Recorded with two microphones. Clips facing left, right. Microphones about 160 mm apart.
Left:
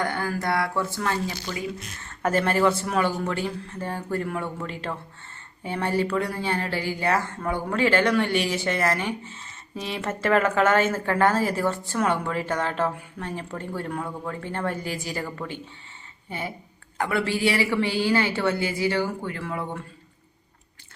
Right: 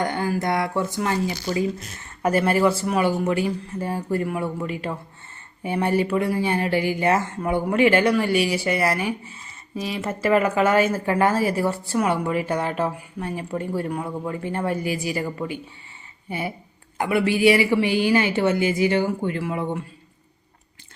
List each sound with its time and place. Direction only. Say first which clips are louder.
0.0 s speech: right 3 dB; 20° right (ahead or behind)
1.5 s speech: right 8 dB; 35° right (ahead or behind)
2.2 s a woman's voice: right 2 dB; 10° right (ahead or behind)
8.0 s a woman's voice: right 3 dB; 5° right (ahead or behind)
17.0 s a woman's voice: right 5 dB; 15° right (ahead or behind)